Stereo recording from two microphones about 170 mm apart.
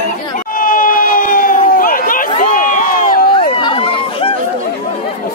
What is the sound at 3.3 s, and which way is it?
Run, 30° left (ahead or behind).